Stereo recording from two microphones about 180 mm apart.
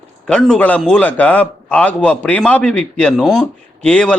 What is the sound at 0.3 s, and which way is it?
A man's voice, 5° left (ahead or behind).